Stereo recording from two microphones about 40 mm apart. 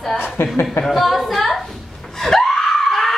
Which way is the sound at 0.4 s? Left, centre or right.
Left.